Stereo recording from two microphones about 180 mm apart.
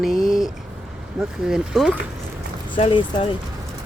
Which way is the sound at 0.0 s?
Centre (ahead or behind).